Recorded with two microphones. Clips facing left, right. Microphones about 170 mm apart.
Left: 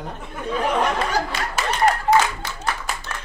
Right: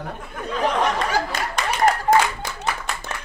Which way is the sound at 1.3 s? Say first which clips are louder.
Right 1 dB; 45° right (ahead or behind).